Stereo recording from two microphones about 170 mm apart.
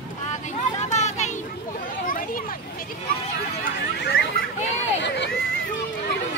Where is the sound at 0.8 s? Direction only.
45° left (ahead or behind).